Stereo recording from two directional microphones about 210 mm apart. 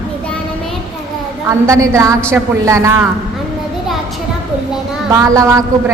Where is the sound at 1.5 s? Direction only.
15° right (ahead or behind).